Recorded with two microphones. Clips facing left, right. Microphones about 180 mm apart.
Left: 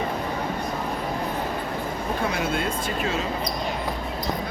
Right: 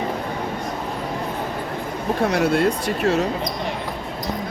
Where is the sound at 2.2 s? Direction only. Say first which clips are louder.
Right 9 dB; 75° right (ahead or behind).